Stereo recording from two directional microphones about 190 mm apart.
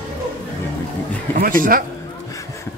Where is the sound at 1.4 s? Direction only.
50° right (ahead or behind).